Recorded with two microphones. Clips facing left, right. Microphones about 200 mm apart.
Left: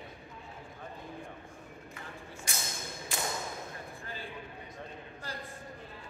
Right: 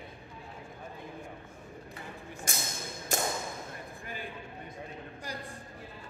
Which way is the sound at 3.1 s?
45° right (ahead or behind).